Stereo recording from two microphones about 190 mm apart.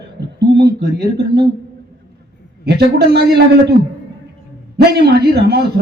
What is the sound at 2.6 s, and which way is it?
A man's voice, 60° right (ahead or behind).